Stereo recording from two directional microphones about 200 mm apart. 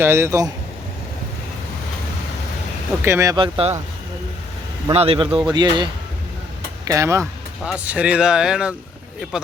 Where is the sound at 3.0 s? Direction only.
15° right (ahead or behind).